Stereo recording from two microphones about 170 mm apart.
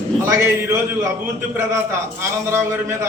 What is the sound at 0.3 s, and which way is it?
A man's voice, 15° right (ahead or behind).